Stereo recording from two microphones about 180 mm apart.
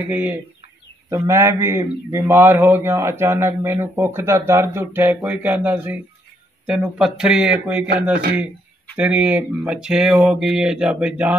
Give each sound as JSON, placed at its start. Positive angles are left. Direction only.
{"t": 0.1, "sound": "a man's voice", "side_deg": -10}
{"t": 8.9, "sound": "speech", "side_deg": -5}